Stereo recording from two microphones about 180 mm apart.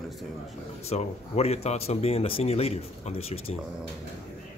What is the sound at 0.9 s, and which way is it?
Speech, 35° left (ahead or behind).